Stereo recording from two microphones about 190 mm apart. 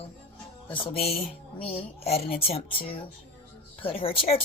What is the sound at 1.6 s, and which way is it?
Speech, 30° left (ahead or behind).